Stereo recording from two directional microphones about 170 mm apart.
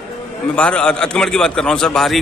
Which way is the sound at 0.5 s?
5° left (ahead or behind).